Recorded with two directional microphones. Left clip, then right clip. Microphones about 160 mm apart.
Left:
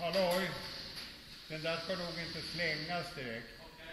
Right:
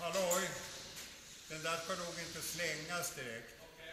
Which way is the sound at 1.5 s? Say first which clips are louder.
Left 2 dB; 35° right (ahead or behind).